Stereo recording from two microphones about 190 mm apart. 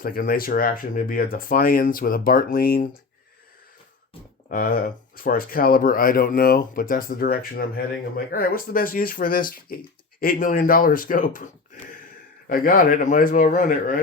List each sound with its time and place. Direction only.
0.0 s speech: 50° left (ahead or behind)
4.4 s speech: 50° left (ahead or behind)
12.5 s speech: 50° left (ahead or behind)